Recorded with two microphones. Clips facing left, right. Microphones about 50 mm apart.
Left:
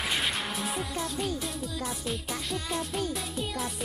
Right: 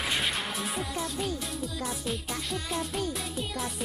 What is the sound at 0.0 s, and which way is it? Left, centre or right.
Music, centre.